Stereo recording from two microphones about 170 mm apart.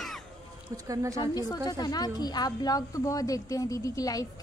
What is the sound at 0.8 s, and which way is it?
Speech, 20° right (ahead or behind).